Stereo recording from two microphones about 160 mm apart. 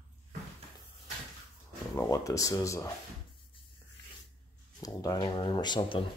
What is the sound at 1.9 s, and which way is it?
Speech, 20° left (ahead or behind).